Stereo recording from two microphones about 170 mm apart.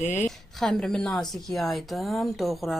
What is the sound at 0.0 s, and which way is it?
Speech, 45° left (ahead or behind).